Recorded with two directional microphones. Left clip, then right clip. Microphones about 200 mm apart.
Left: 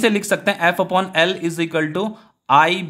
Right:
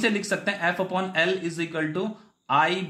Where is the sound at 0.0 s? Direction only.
40° left (ahead or behind).